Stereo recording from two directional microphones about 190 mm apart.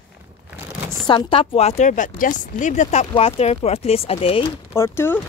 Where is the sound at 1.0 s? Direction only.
25° left (ahead or behind).